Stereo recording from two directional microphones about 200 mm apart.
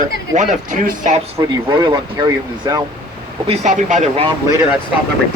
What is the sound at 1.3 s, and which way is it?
Speech, 20° right (ahead or behind).